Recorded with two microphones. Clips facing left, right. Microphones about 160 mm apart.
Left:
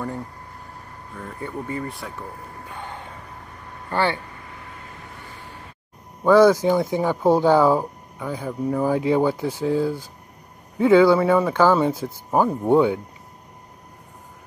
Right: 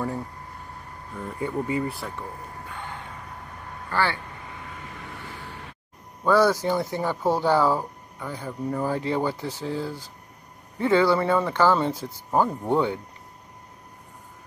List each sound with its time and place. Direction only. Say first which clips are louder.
1.4 s speech: right 3 dB; 15° right (ahead or behind)
1.9 s speech: right 1 dB; centre (ahead or behind)
3.9 s speech: left 3 dB; 20° left (ahead or behind)
6.2 s speech: left 6 dB; 15° left (ahead or behind)